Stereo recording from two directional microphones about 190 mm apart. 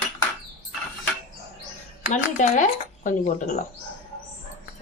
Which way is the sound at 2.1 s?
40° left (ahead or behind).